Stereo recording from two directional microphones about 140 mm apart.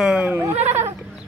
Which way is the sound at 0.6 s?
55° right (ahead or behind).